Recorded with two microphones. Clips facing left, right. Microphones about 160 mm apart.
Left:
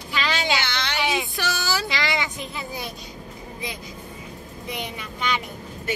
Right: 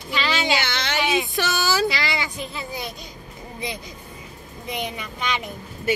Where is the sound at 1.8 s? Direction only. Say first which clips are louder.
Right 2 dB; 20° left (ahead or behind).